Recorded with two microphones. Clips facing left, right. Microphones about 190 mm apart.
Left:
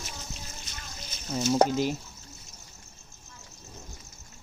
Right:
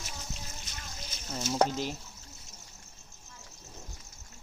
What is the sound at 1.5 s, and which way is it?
Speech, 5° left (ahead or behind).